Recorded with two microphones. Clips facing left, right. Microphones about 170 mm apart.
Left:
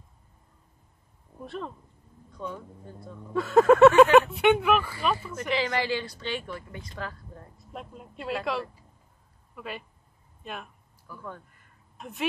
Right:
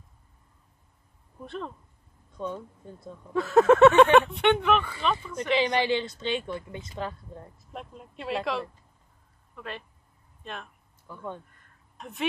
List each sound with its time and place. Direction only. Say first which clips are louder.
1.4 s speech: even; centre (ahead or behind)
2.3 s speech: right 3 dB; 25° right (ahead or behind)
3.3 s speech: even; centre (ahead or behind)
5.5 s speech: right 3 dB; 20° right (ahead or behind)
7.5 s speech: left 4 dB; centre (ahead or behind)
11.1 s speech: right 1 dB; 20° right (ahead or behind)
11.5 s a sound: even; centre (ahead or behind)